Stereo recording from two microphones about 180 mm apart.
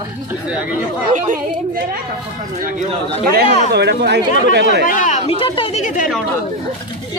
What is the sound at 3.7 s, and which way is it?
Speech, 65° right (ahead or behind).